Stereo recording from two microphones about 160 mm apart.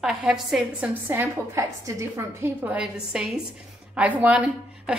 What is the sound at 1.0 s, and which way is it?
A woman's voice, 15° right (ahead or behind).